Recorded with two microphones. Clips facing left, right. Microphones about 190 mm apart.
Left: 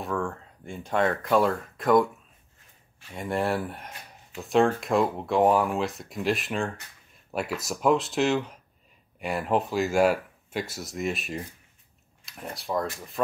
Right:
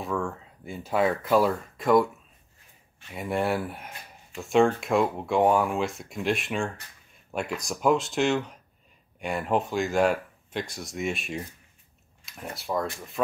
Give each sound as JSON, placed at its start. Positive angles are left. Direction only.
{"t": 0.0, "sound": "speech", "side_deg": 0}
{"t": 3.1, "sound": "speech", "side_deg": 0}